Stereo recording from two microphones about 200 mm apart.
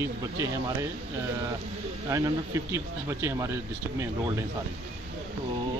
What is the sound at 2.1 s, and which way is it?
Speech, 15° right (ahead or behind).